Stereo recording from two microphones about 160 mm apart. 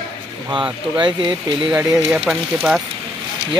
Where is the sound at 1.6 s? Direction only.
5° right (ahead or behind).